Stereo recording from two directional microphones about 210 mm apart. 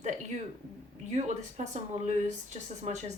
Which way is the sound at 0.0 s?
35° right (ahead or behind).